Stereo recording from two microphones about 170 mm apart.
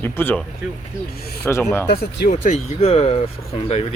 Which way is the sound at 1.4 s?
15° left (ahead or behind).